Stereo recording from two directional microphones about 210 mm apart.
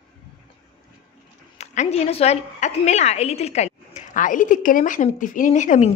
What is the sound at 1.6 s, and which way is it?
A woman's voice, 30° left (ahead or behind).